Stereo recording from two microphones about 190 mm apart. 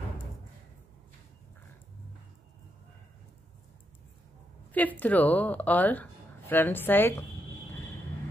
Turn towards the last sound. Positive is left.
turn(degrees=10)  # may be behind; listen again after turning